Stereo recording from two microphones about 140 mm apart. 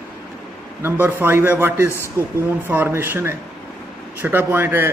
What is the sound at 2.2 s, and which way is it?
Speech, 20° left (ahead or behind).